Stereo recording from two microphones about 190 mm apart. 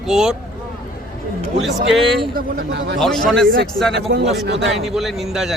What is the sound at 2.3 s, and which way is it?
Speech, 50° right (ahead or behind).